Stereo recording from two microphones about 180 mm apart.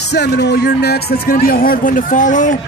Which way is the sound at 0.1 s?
65° left (ahead or behind).